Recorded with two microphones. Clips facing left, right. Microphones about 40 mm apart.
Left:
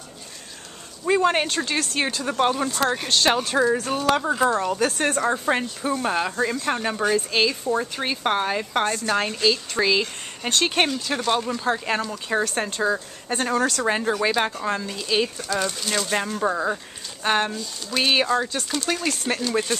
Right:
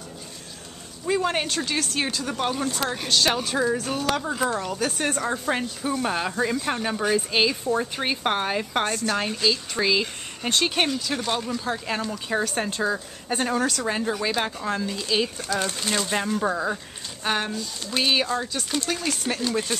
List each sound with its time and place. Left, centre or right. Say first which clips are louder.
1.0 s speech: left 4 dB; centre
13.8 s speech: left 4 dB; centre
15.9 s speech: right 1 dB; centre
18.9 s speech: left 2 dB; centre
19.4 s speech: left 1 dB; centre